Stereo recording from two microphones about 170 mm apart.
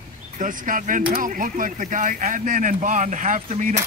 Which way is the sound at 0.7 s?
50° right (ahead or behind).